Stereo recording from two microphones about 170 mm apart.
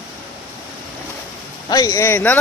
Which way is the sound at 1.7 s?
20° left (ahead or behind).